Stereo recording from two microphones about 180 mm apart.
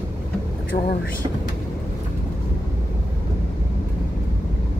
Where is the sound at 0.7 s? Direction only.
55° left (ahead or behind).